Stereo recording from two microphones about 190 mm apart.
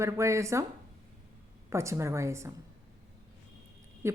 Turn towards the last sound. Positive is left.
turn(degrees=-15)  # may be behind; listen again after turning